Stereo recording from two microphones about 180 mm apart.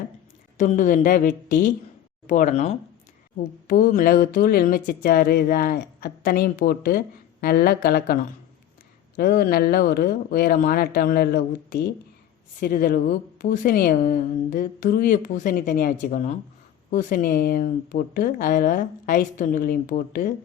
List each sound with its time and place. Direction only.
0.5 s a woman's voice: 45° left (ahead or behind)
3.7 s a woman's voice: 50° left (ahead or behind)